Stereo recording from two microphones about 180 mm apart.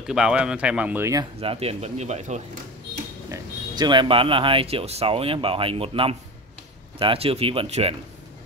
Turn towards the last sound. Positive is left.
turn(degrees=-35)  # may be behind; listen again after turning